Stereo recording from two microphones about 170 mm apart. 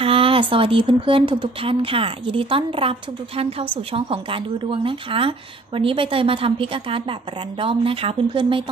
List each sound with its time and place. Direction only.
0.0 s speech: 30° right (ahead or behind)